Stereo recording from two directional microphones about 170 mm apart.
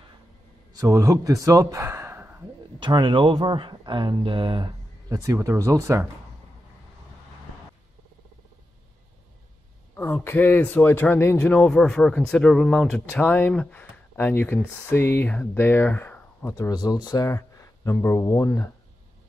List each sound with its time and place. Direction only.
0.7 s a man's voice: 20° right (ahead or behind)
2.8 s speech: 30° right (ahead or behind)
5.1 s speech: 20° right (ahead or behind)
9.9 s speech: 10° left (ahead or behind)